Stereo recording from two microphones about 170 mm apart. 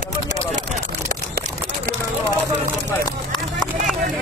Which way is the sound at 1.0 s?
45° right (ahead or behind).